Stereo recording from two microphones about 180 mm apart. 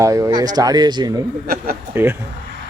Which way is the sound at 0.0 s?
15° right (ahead or behind).